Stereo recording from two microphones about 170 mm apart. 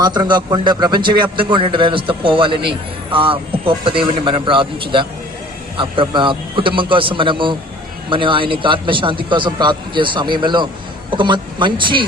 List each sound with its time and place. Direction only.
0.0 s a man's voice: 25° right (ahead or behind)